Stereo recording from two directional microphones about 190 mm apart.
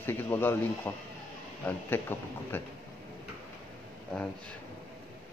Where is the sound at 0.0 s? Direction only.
10° left (ahead or behind).